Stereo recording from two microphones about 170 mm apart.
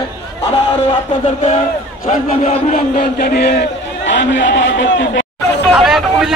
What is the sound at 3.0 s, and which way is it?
A man's voice, 60° left (ahead or behind).